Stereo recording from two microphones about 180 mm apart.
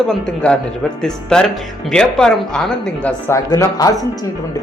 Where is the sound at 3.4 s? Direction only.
20° left (ahead or behind).